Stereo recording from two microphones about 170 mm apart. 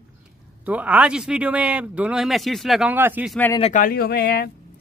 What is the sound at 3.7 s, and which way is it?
Speech, 60° left (ahead or behind).